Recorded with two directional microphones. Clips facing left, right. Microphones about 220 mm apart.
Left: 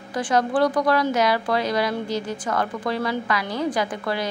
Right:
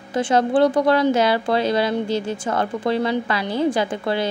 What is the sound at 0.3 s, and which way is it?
Speech, 25° right (ahead or behind).